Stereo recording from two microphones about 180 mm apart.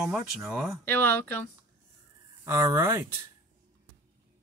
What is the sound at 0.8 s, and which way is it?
Speech, 10° left (ahead or behind).